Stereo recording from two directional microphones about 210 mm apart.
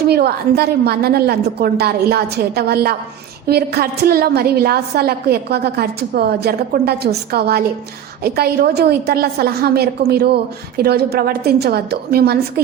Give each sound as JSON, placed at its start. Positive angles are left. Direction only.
{"t": 0.1, "sound": "a woman's voice", "side_deg": -50}